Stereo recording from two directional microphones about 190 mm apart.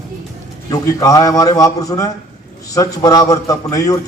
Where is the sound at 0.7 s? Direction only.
20° left (ahead or behind).